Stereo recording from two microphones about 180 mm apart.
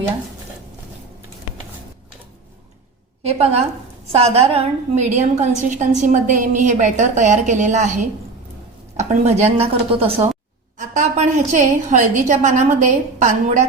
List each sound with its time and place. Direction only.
3.2 s a woman's voice: 35° right (ahead or behind)